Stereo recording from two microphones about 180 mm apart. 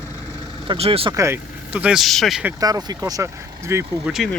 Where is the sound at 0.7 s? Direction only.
30° right (ahead or behind).